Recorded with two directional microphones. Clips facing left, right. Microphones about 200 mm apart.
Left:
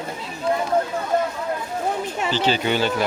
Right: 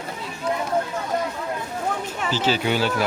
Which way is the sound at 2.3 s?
5° right (ahead or behind).